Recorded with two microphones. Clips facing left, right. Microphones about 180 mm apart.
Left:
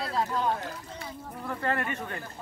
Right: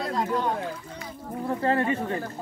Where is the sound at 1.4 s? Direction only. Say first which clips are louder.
Right 6 dB; 30° right (ahead or behind).